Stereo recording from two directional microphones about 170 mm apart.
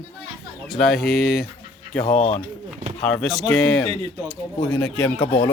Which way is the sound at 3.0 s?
5° left (ahead or behind).